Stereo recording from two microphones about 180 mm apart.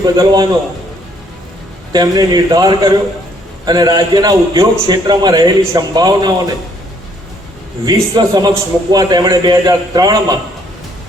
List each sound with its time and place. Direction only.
0.0 s a man's voice: 20° right (ahead or behind)
1.9 s a man's voice: 20° right (ahead or behind)
7.9 s a man's voice: 20° right (ahead or behind)